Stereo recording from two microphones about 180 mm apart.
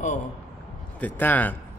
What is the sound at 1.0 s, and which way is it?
Speech, 10° left (ahead or behind).